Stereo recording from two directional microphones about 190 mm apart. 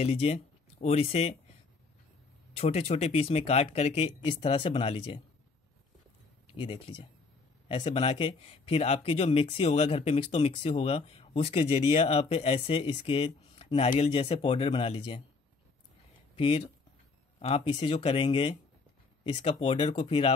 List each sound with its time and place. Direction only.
0.0 s speech: 35° left (ahead or behind)
2.5 s speech: 35° left (ahead or behind)
6.4 s speech: 25° left (ahead or behind)
16.3 s speech: 30° left (ahead or behind)